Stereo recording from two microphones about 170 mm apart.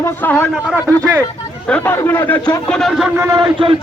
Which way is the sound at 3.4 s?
30° right (ahead or behind).